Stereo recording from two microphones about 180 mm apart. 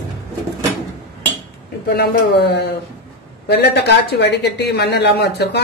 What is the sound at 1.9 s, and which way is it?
Speech, 70° left (ahead or behind).